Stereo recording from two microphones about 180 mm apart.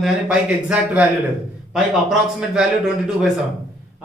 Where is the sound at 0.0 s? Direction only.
5° right (ahead or behind).